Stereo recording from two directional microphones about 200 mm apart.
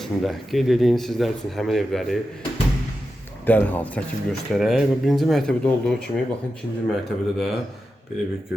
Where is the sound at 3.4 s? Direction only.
10° left (ahead or behind).